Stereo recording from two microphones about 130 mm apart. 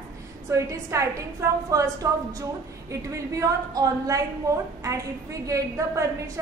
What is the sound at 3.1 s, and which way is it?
A woman's voice, 25° right (ahead or behind).